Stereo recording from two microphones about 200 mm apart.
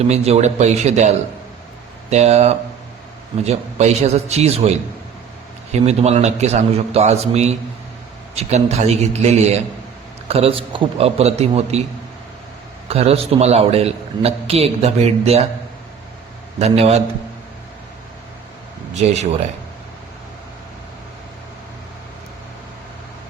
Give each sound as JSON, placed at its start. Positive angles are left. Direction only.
{"t": 0.1, "sound": "a man's voice", "side_deg": -35}
{"t": 12.9, "sound": "a man's voice", "side_deg": -30}
{"t": 16.6, "sound": "a man's voice", "side_deg": -30}
{"t": 18.9, "sound": "a man's voice", "side_deg": -35}